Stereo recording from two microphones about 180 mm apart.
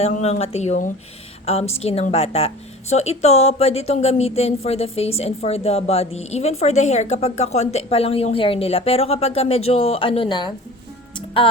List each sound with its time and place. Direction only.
0.0 s speech: 35° left (ahead or behind)